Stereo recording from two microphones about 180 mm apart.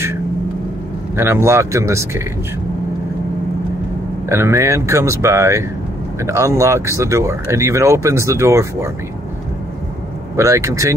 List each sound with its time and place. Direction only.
1.1 s speech: 15° right (ahead or behind)
4.3 s speech: 15° right (ahead or behind)
10.3 s speech: 15° right (ahead or behind)